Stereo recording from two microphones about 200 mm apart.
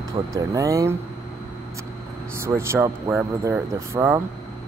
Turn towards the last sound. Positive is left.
turn(degrees=-15)  # may be behind; listen again after turning